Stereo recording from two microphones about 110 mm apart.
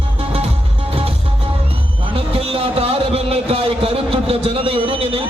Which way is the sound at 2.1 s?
55° right (ahead or behind).